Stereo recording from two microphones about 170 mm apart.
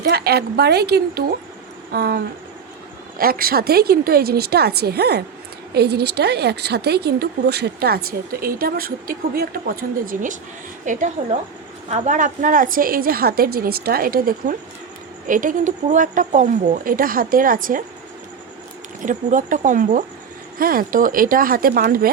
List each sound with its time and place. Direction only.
0.0 s a woman's voice: 70° right (ahead or behind)
19.0 s a woman's voice: 50° right (ahead or behind)